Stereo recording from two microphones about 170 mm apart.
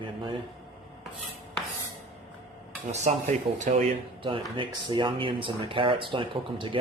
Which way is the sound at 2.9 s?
40° right (ahead or behind).